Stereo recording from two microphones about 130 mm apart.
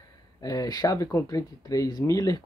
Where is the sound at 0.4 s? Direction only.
30° left (ahead or behind).